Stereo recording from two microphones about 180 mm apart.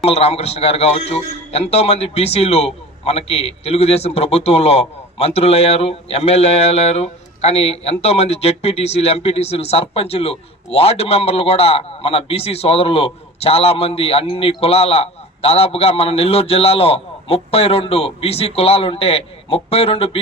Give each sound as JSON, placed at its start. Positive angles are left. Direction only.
{"t": 0.0, "sound": "a man's voice", "side_deg": 35}